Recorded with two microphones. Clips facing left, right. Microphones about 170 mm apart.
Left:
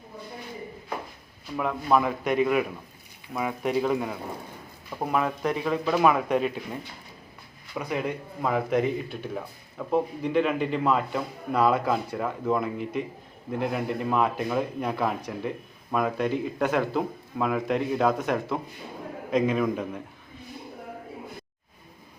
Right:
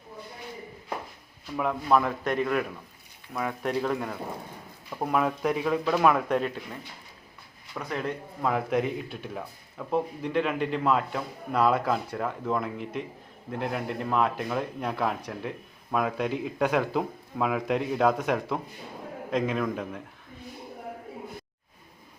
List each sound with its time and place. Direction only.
1.5 s speech: centre (ahead or behind)
7.8 s speech: 10° left (ahead or behind)